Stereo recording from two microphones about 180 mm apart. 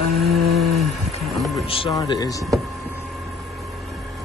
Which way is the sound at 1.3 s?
Centre (ahead or behind).